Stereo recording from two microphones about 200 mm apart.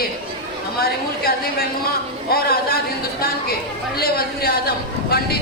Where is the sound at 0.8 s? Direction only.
50° left (ahead or behind).